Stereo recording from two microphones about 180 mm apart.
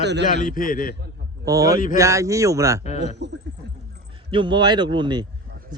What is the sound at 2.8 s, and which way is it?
Speech, 40° left (ahead or behind).